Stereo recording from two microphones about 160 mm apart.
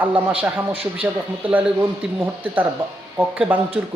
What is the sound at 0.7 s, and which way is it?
Speech, 35° right (ahead or behind).